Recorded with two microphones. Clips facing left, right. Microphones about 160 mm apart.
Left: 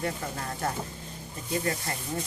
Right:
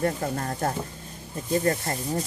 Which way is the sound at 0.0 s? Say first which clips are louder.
Right 6 dB; 45° right (ahead or behind).